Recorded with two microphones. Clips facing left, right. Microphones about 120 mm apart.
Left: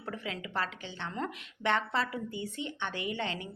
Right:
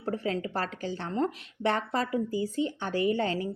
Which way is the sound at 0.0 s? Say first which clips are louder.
Right 8 dB; 40° right (ahead or behind).